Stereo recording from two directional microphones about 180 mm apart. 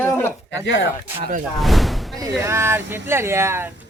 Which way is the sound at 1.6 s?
Centre (ahead or behind).